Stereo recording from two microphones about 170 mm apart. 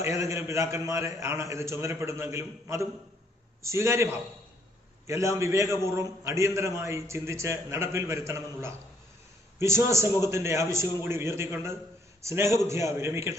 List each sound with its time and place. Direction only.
0.0 s a man's voice: 15° right (ahead or behind)